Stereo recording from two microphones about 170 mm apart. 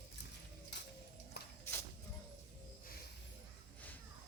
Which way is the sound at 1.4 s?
75° left (ahead or behind).